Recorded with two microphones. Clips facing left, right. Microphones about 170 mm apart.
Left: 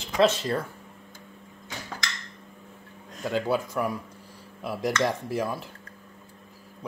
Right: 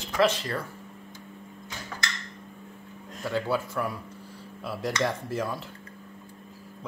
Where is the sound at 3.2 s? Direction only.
15° left (ahead or behind).